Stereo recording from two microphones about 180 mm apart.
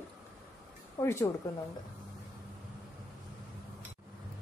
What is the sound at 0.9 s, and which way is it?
Speech, 20° left (ahead or behind).